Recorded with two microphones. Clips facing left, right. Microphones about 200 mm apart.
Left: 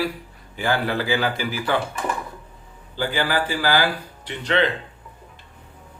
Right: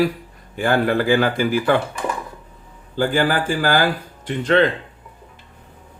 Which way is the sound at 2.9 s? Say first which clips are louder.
Right 5 dB; 45° right (ahead or behind).